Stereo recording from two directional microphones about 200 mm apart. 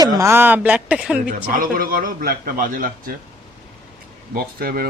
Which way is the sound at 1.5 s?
45° right (ahead or behind).